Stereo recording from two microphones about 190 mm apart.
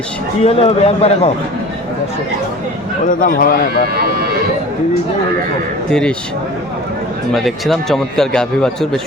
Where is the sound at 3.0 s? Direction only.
45° left (ahead or behind).